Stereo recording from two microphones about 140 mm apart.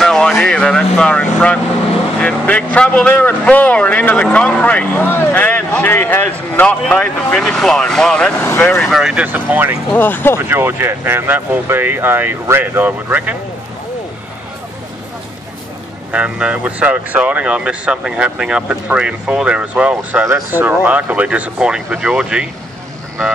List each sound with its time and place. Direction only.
0.0 s vehicle: 5° left (ahead or behind)
2.1 s a man's voice: 10° left (ahead or behind)
8.8 s speech: centre (ahead or behind)
9.9 s a man's voice: 15° left (ahead or behind)
10.3 s speech: 15° right (ahead or behind)
16.1 s speech: 10° right (ahead or behind)